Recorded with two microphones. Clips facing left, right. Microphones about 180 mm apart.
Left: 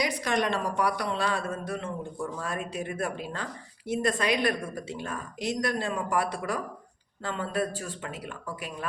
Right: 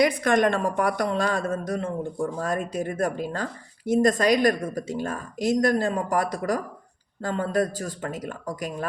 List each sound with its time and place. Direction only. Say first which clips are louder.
0.0 s speech: right 7 dB; 55° right (ahead or behind)